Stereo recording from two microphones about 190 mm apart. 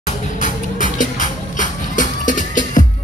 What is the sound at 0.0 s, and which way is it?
Music, 40° left (ahead or behind).